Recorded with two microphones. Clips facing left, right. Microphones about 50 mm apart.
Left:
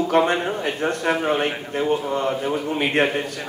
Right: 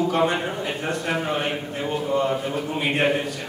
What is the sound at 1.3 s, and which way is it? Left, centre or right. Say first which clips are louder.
Speech: left 3 dB; left.